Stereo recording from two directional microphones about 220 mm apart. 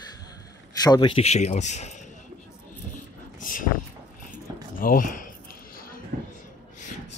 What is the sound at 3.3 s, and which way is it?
Vehicle, 35° left (ahead or behind).